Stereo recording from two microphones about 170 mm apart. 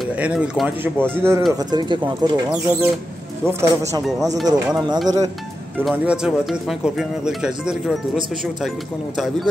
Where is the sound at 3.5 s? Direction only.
15° right (ahead or behind).